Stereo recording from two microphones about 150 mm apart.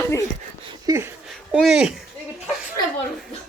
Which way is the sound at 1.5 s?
Centre (ahead or behind).